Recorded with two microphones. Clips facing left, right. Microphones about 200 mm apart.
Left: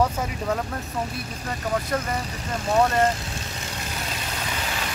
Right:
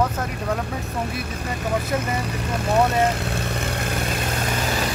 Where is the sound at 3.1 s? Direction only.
60° right (ahead or behind).